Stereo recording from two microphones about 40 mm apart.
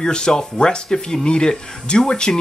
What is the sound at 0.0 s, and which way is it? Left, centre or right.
Speech, centre.